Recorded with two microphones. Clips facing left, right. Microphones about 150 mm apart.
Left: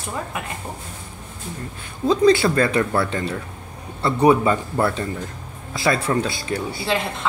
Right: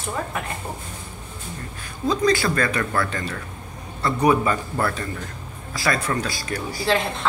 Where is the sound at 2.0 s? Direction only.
25° left (ahead or behind).